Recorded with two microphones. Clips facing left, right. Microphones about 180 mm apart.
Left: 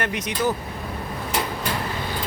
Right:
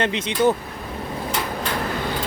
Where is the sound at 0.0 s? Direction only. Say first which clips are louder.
Right 5 dB; 25° right (ahead or behind).